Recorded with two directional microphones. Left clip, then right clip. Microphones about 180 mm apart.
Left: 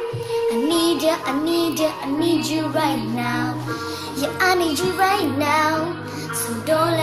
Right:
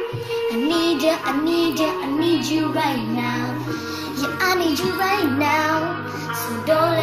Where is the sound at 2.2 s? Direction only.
15° left (ahead or behind).